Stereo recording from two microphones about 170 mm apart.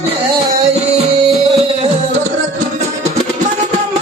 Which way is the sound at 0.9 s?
35° right (ahead or behind).